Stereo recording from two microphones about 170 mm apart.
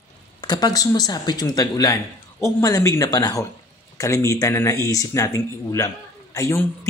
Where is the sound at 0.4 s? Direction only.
25° left (ahead or behind).